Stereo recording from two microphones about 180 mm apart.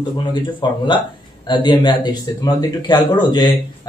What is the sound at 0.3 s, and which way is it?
Speech, 25° left (ahead or behind).